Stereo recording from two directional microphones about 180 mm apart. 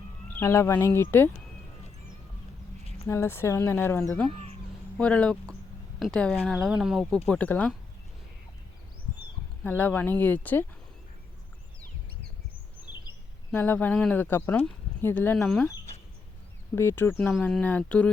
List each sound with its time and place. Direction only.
0.3 s speech: 15° left (ahead or behind)
3.1 s speech: 15° left (ahead or behind)
4.3 s speech: 35° right (ahead or behind)
4.9 s speech: 5° left (ahead or behind)
9.6 s speech: 10° left (ahead or behind)
13.5 s speech: 10° left (ahead or behind)
16.7 s speech: 10° left (ahead or behind)